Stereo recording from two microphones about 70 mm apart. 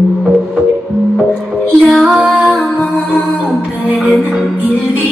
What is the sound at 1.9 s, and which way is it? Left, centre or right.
Music, centre.